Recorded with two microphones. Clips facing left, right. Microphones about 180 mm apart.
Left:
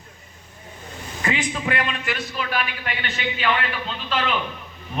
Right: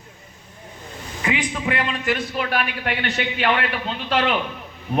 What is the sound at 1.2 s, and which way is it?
Speech, 10° right (ahead or behind).